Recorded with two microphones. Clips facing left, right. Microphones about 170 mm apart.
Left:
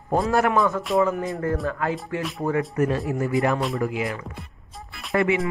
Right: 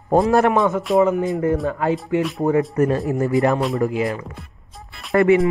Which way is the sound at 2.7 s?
40° right (ahead or behind).